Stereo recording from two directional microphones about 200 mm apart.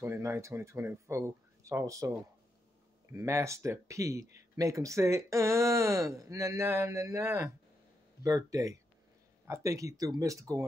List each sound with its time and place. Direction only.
0.0 s speech: 15° right (ahead or behind)